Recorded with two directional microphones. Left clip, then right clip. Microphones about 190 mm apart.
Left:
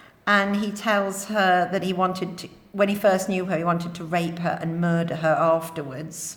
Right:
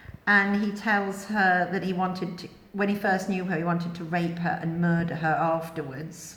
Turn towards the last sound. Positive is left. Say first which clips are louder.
# left 4 dB
turn(degrees=55)  # may be behind; listen again after turning